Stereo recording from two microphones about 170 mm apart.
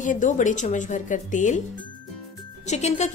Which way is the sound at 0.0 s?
50° left (ahead or behind).